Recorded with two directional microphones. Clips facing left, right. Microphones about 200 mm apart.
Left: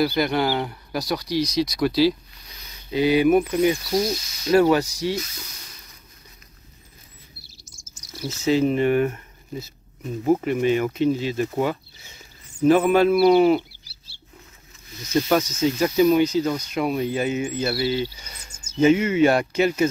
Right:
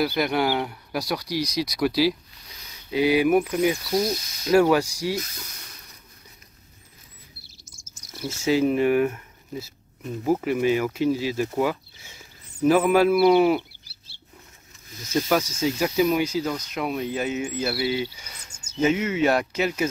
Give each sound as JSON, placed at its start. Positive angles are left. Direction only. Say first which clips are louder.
{"t": 0.0, "sound": "speech", "louder": "left 2 dB", "side_deg": -5}
{"t": 7.4, "sound": "chirp", "louder": "left 1 dB", "side_deg": -55}
{"t": 8.1, "sound": "cricket", "louder": "left 1 dB", "side_deg": -25}
{"t": 8.5, "sound": "speech", "louder": "left 1 dB", "side_deg": -5}
{"t": 13.8, "sound": "chicken", "louder": "left 1 dB", "side_deg": -55}
{"t": 15.2, "sound": "speech", "louder": "left 2 dB", "side_deg": -5}
{"t": 16.4, "sound": "speech", "louder": "left 4 dB", "side_deg": 5}